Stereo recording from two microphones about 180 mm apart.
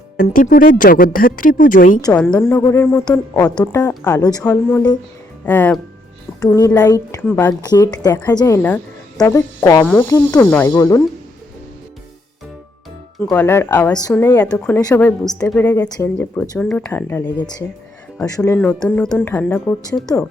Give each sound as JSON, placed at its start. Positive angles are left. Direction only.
{"t": 0.2, "sound": "speech", "side_deg": 50}
{"t": 2.5, "sound": "a woman's voice", "side_deg": 15}
{"t": 7.6, "sound": "a woman's voice", "side_deg": 20}
{"t": 13.1, "sound": "a woman's voice", "side_deg": 5}
{"t": 15.0, "sound": "a woman's voice", "side_deg": 0}